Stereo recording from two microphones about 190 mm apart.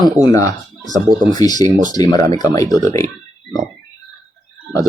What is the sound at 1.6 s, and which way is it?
Speech, 45° right (ahead or behind).